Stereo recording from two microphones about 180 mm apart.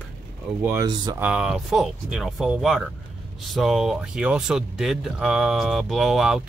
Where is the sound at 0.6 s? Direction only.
20° right (ahead or behind).